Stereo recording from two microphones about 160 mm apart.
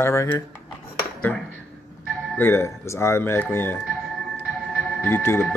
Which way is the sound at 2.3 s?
15° left (ahead or behind).